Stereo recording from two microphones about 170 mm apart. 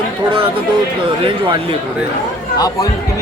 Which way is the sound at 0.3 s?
30° right (ahead or behind).